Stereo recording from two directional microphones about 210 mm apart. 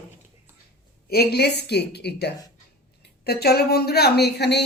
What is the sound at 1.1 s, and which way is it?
Speech, 50° left (ahead or behind).